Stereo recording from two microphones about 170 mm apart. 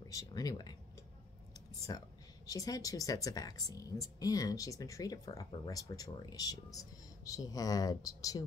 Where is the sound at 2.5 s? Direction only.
20° left (ahead or behind).